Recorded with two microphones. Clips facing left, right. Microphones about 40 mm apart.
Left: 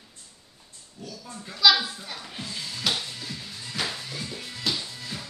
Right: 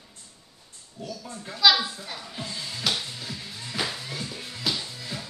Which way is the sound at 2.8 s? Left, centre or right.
Centre.